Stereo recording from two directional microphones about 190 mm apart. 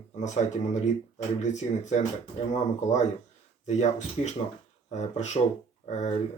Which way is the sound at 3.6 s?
40° left (ahead or behind).